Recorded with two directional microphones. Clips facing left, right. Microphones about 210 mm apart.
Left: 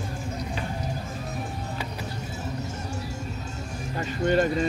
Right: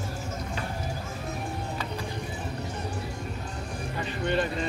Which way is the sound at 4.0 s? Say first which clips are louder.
Left 5 dB; 45° left (ahead or behind).